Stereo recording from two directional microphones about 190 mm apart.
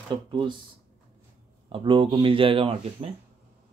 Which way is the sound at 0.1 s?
25° right (ahead or behind).